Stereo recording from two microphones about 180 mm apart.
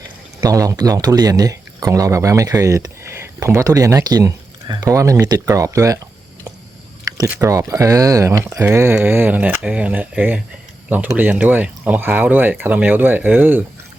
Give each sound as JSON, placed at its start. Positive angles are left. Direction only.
{"t": 0.4, "sound": "speech", "side_deg": -20}
{"t": 7.3, "sound": "speech", "side_deg": -15}